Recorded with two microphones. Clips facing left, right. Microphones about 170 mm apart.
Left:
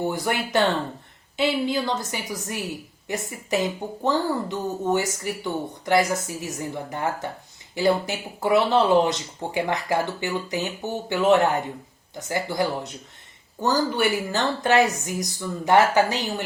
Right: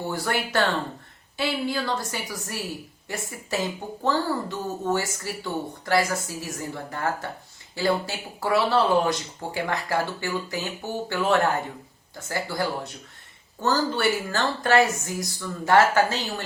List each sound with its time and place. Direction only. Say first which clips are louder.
0.1 s speech: left 2 dB; 20° left (ahead or behind)